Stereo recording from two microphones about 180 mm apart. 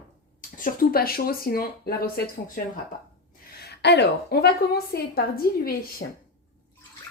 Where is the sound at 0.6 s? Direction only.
55° left (ahead or behind).